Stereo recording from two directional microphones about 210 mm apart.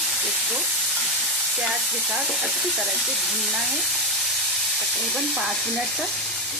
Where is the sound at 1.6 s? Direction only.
Centre (ahead or behind).